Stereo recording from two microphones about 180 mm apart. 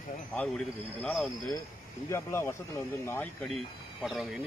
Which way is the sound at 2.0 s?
15° left (ahead or behind).